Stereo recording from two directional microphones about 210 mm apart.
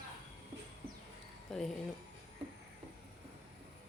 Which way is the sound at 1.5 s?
Centre (ahead or behind).